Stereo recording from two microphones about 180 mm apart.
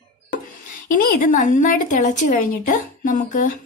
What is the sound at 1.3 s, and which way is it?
A woman's voice, 45° left (ahead or behind).